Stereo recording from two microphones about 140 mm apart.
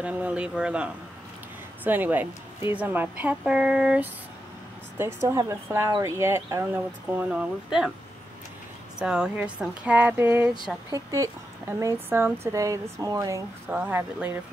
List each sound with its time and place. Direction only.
0.0 s speech: 10° right (ahead or behind)
1.9 s speech: 15° right (ahead or behind)
4.9 s a woman's voice: 20° right (ahead or behind)
9.0 s a woman's voice: 5° right (ahead or behind); by 13.4 s 25° right (ahead or behind)
13.7 s speech: 10° right (ahead or behind)